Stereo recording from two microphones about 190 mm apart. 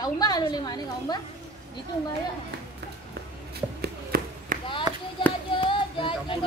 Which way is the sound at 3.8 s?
50° right (ahead or behind).